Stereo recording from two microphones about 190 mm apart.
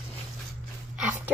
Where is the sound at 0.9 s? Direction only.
10° right (ahead or behind).